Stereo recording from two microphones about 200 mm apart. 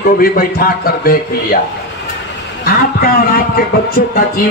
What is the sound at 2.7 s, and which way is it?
Speech, 50° left (ahead or behind).